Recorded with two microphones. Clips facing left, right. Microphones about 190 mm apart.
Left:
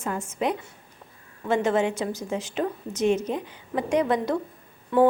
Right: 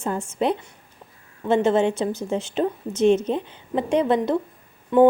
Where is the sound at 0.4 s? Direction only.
30° right (ahead or behind).